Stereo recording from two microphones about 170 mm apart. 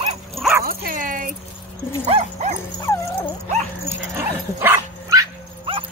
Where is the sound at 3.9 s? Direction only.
15° right (ahead or behind).